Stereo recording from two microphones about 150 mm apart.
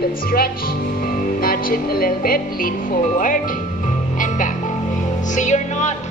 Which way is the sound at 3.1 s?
65° left (ahead or behind).